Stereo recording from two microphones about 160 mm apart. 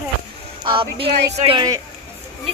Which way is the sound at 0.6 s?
35° right (ahead or behind).